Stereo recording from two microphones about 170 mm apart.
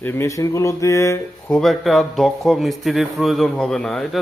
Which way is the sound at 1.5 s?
Centre (ahead or behind).